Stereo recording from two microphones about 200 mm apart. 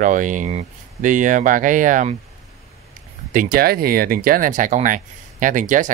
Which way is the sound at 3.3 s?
45° right (ahead or behind).